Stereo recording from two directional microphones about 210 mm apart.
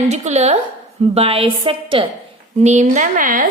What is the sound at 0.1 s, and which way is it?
A woman's voice, 30° right (ahead or behind).